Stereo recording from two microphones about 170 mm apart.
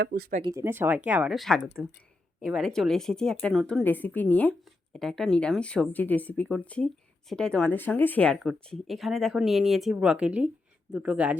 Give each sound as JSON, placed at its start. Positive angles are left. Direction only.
{"t": 0.0, "sound": "speech", "side_deg": -60}
{"t": 0.4, "sound": "speech", "side_deg": -15}